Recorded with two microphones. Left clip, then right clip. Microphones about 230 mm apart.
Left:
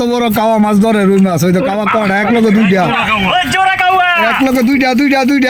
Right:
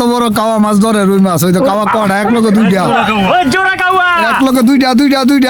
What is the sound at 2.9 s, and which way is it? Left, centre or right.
Speech, right.